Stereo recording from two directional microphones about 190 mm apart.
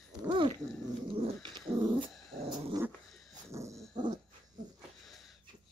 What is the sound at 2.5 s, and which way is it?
Growling, 20° right (ahead or behind).